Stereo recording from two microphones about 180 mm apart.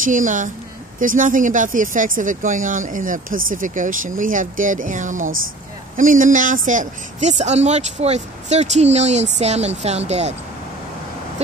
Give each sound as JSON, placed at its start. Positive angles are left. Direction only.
{"t": 0.0, "sound": "speech", "side_deg": -45}